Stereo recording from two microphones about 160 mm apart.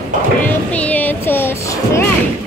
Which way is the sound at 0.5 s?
10° left (ahead or behind).